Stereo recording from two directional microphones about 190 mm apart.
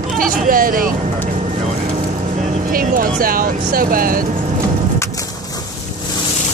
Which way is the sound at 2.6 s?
50° right (ahead or behind).